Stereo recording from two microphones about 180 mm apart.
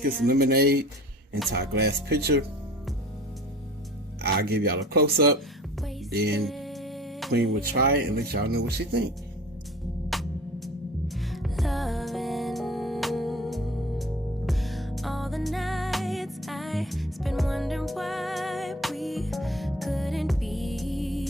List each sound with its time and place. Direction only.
0.3 s speech: 60° right (ahead or behind)
4.2 s speech: 60° right (ahead or behind)
6.4 s music: centre (ahead or behind)
7.6 s speech: 55° right (ahead or behind)
10.1 s music: centre (ahead or behind)